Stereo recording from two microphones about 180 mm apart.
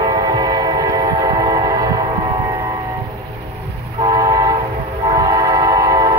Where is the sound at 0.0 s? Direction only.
25° right (ahead or behind).